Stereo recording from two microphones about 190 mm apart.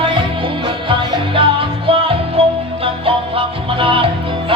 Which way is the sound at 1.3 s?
30° right (ahead or behind).